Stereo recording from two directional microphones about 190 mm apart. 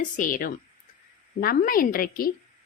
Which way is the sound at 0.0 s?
45° left (ahead or behind).